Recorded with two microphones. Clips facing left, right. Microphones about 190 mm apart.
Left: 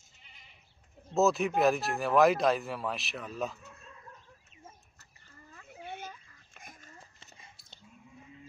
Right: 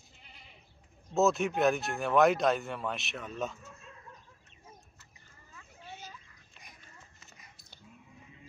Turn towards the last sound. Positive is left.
turn(degrees=25)  # may be behind; listen again after turning